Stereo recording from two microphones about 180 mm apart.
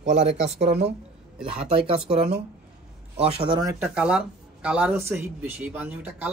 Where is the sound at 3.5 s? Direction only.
20° right (ahead or behind).